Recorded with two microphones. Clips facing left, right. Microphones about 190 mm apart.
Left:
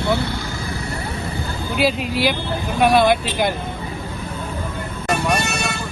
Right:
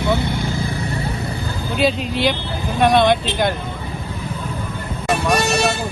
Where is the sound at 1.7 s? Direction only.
5° left (ahead or behind).